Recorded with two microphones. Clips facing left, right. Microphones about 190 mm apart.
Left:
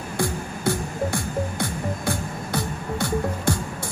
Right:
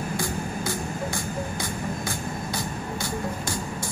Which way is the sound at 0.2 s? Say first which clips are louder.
Left 4 dB; 60° left (ahead or behind).